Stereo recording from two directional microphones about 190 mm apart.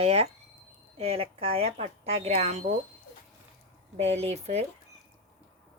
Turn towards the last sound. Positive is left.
turn(degrees=-35)  # may be behind; listen again after turning